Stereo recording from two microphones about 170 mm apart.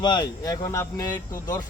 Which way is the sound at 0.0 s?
25° left (ahead or behind).